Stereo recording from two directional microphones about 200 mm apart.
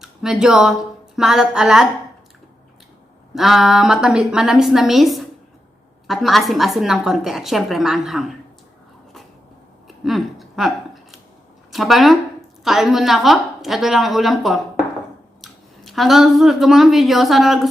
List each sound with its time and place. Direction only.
0.0 s speech: centre (ahead or behind)
3.3 s a woman's voice: centre (ahead or behind)
9.8 s a sound: centre (ahead or behind)
11.7 s a woman's voice: centre (ahead or behind)